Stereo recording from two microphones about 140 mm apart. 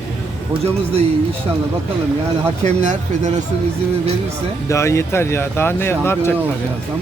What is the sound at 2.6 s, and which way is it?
Speech, 60° right (ahead or behind).